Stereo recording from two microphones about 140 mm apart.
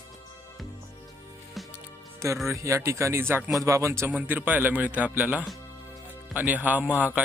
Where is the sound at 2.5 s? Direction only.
20° right (ahead or behind).